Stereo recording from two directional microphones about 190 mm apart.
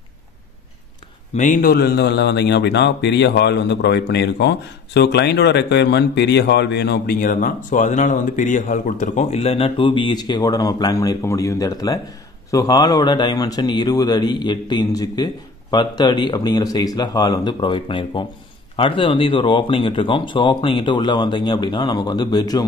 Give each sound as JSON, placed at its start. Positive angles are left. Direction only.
{"t": 1.3, "sound": "a man's voice", "side_deg": 40}
{"t": 7.2, "sound": "speech", "side_deg": 45}